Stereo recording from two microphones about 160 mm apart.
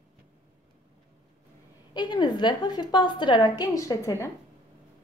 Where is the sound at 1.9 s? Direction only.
25° left (ahead or behind).